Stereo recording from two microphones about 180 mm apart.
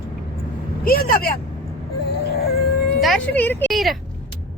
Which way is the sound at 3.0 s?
Centre (ahead or behind).